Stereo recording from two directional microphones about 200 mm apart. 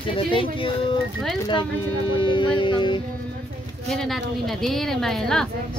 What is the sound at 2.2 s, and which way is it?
Speech, 25° left (ahead or behind).